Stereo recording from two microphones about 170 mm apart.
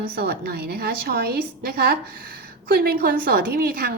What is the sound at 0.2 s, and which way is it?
A woman's voice, 65° right (ahead or behind).